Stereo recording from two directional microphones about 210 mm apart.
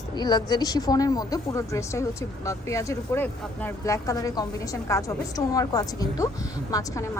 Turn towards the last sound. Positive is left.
turn(degrees=15)  # may be behind; listen again after turning